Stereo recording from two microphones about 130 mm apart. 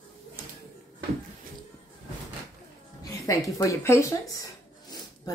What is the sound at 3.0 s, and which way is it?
A woman's voice, 25° left (ahead or behind).